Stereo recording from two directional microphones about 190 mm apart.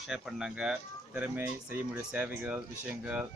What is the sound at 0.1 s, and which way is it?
Speech, centre (ahead or behind).